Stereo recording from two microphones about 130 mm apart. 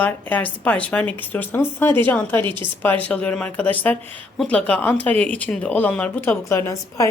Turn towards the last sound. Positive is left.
turn(degrees=20)  # may be behind; listen again after turning